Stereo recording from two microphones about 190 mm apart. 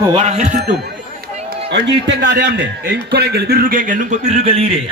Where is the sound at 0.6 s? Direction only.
60° right (ahead or behind).